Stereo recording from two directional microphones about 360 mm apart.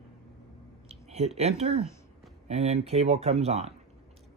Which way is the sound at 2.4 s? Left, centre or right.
Centre.